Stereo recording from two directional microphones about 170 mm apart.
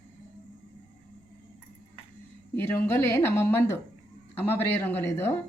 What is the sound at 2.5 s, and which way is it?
Speech, 15° left (ahead or behind).